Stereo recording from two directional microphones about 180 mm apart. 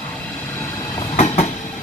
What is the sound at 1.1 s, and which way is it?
Train, 35° left (ahead or behind).